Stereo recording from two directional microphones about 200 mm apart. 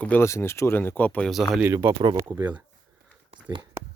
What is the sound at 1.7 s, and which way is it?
Speech, 15° right (ahead or behind).